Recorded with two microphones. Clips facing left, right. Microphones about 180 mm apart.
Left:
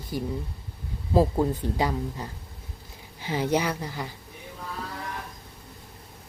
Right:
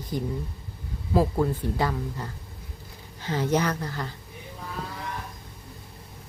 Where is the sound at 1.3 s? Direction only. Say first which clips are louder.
Even; 20° left (ahead or behind).